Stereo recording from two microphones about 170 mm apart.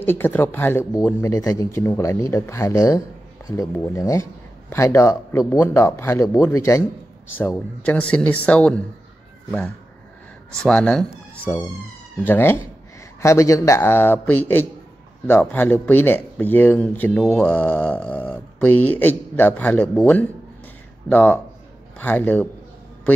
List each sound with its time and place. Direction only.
0.0 s speech: 10° left (ahead or behind)
10.6 s a man's voice: 5° left (ahead or behind)